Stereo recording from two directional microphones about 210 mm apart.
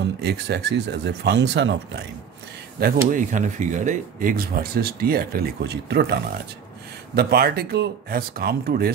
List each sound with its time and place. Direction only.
0.0 s speech: 55° right (ahead or behind)
2.8 s speech: 40° right (ahead or behind)
7.2 s speech: 50° right (ahead or behind)